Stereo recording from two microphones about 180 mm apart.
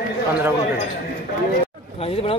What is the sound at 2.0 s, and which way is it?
Speech, 35° left (ahead or behind).